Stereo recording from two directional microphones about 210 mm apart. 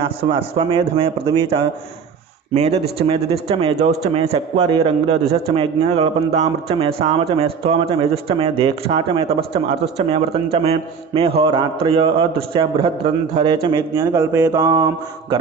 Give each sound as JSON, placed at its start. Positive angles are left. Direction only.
{"t": 0.2, "sound": "a man's voice", "side_deg": -25}